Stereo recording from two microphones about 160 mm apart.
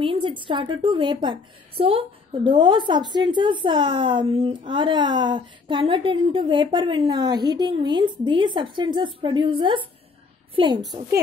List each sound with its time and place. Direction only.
0.0 s a woman's voice: 30° right (ahead or behind)